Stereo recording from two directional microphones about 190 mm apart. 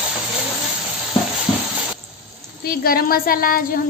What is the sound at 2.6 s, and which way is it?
A woman's voice, 50° left (ahead or behind).